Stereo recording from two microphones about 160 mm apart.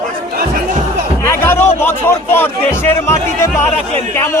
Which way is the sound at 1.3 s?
15° left (ahead or behind).